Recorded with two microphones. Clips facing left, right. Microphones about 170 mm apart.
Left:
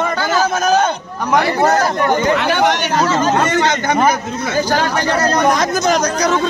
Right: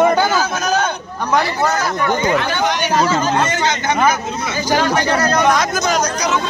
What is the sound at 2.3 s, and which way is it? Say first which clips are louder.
Speech: left 3 dB; 70° left (ahead or behind).